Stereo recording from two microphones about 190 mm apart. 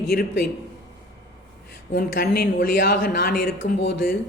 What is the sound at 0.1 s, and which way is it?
Speech, 55° left (ahead or behind).